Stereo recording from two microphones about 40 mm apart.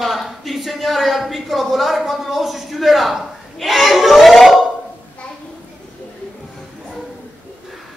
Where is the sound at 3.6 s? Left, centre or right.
Centre.